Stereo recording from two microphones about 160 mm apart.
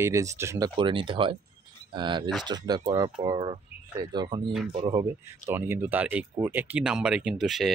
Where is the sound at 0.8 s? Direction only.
30° right (ahead or behind).